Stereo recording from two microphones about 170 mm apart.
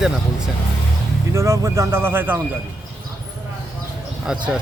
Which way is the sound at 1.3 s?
15° right (ahead or behind).